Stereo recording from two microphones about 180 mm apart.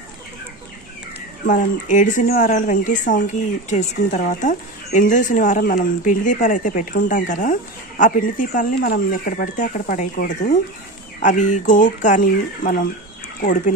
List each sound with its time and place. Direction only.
1.4 s a woman's voice: 45° left (ahead or behind)